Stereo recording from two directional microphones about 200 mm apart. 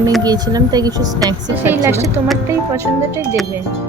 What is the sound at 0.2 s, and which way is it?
Speech, 20° right (ahead or behind).